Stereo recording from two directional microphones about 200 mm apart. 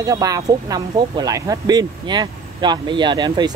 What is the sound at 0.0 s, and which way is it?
Speech, 15° right (ahead or behind).